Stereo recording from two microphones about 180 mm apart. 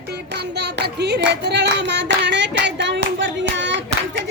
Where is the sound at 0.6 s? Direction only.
70° right (ahead or behind).